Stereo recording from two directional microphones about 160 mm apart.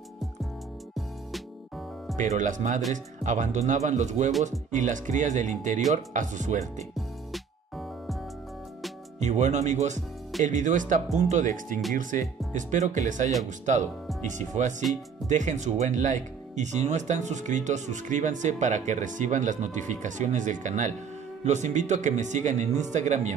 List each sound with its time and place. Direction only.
2.1 s speech: 50° right (ahead or behind)
7.0 s music: centre (ahead or behind)
9.2 s speech: 45° right (ahead or behind)